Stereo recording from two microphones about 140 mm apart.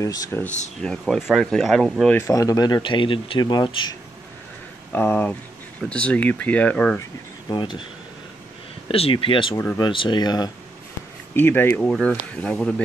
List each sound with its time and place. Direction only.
0.0 s speech: 25° left (ahead or behind)
0.7 s speech: centre (ahead or behind)
2.1 s speech: 20° left (ahead or behind)
4.9 s speech: 15° left (ahead or behind)
7.0 s speech: 30° left (ahead or behind)
8.8 s speech: 40° left (ahead or behind)
11.3 s speech: 15° left (ahead or behind)